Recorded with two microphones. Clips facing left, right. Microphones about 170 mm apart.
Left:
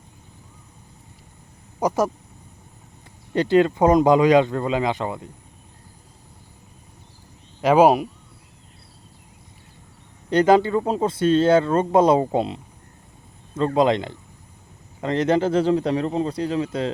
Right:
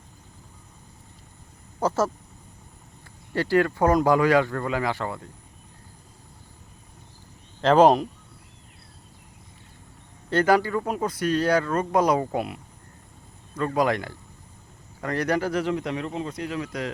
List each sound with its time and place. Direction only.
1.8 s speech: 15° left (ahead or behind)
3.3 s speech: 20° left (ahead or behind)
7.6 s speech: 10° left (ahead or behind)
10.2 s speech: 20° left (ahead or behind)